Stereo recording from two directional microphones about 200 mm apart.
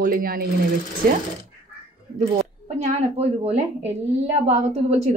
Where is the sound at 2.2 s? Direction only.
35° right (ahead or behind).